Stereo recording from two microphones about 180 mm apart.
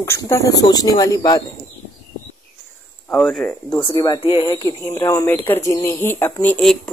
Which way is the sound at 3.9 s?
20° left (ahead or behind).